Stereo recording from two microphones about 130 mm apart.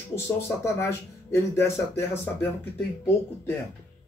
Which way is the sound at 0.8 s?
20° left (ahead or behind).